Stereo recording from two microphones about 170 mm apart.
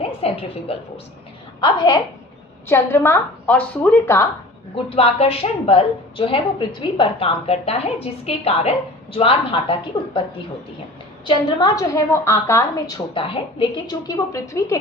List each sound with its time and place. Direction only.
0.0 s music: 35° left (ahead or behind)
1.6 s a woman's voice: 25° left (ahead or behind)
4.7 s a woman's voice: 35° left (ahead or behind)
11.3 s a woman's voice: 25° left (ahead or behind)
14.3 s a woman's voice: 20° left (ahead or behind)